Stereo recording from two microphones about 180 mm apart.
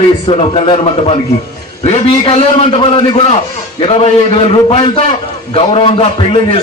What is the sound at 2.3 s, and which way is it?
A man's voice, 30° left (ahead or behind).